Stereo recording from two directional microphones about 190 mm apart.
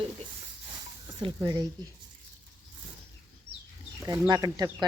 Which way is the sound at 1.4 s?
20° right (ahead or behind).